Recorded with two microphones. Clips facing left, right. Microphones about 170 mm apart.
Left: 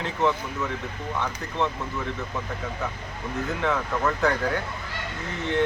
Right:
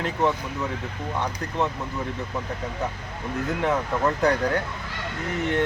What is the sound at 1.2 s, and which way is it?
Speech, 15° right (ahead or behind).